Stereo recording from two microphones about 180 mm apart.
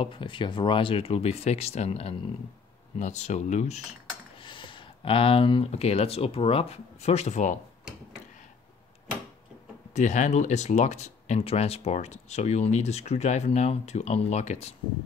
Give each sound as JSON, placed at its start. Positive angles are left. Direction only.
{"t": 0.0, "sound": "speech", "side_deg": 30}
{"t": 4.4, "sound": "speech", "side_deg": 25}
{"t": 9.9, "sound": "speech", "side_deg": 40}